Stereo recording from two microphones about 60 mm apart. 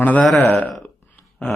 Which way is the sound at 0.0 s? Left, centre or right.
Left.